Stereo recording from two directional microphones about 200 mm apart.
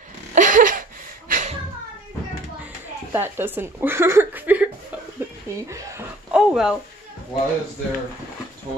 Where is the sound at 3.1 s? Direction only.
10° right (ahead or behind).